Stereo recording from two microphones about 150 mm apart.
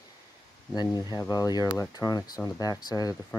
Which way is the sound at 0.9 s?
25° left (ahead or behind).